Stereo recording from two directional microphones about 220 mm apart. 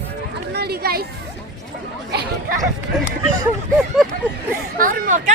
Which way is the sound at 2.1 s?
45° right (ahead or behind).